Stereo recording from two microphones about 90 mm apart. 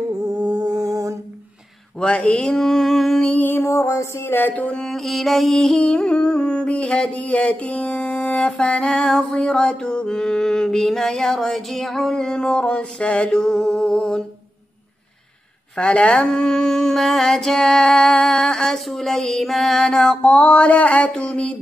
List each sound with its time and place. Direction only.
0.3 s mantra: 45° right (ahead or behind)
2.0 s music: 10° left (ahead or behind)
3.3 s a sound: 20° left (ahead or behind)
4.8 s music: centre (ahead or behind)
15.7 s music: 10° left (ahead or behind)